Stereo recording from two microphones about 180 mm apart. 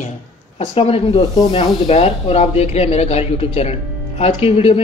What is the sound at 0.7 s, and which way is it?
Speech, 30° left (ahead or behind).